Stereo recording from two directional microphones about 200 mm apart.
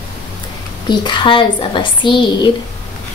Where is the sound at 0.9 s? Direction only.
20° left (ahead or behind).